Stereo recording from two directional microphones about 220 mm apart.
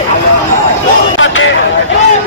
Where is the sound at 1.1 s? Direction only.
60° left (ahead or behind).